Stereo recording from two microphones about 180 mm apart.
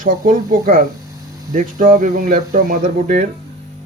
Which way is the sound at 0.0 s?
50° right (ahead or behind).